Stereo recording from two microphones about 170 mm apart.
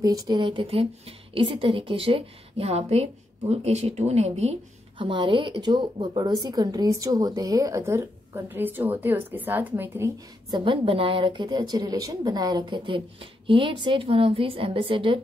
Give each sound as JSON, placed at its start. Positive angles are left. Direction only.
{"t": 0.0, "sound": "a woman's voice", "side_deg": -20}
{"t": 10.5, "sound": "a woman's voice", "side_deg": -30}